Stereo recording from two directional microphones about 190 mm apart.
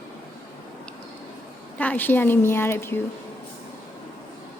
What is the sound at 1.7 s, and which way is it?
A woman's voice, 10° left (ahead or behind).